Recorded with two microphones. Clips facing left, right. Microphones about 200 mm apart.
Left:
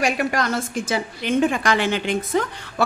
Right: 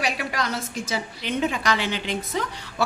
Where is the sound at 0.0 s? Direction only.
50° left (ahead or behind).